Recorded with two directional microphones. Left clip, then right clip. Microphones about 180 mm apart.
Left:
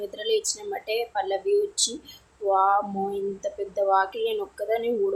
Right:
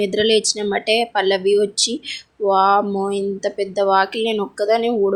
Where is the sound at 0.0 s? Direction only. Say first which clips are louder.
Right 10 dB; 35° right (ahead or behind).